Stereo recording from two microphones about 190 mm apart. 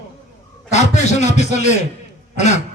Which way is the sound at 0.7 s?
35° left (ahead or behind).